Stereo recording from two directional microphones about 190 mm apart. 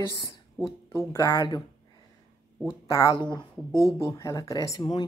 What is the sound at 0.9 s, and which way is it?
Speech, 15° left (ahead or behind).